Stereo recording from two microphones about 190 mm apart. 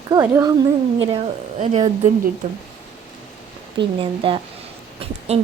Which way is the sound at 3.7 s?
30° right (ahead or behind).